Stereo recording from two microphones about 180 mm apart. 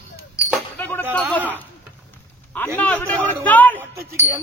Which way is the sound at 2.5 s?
10° left (ahead or behind).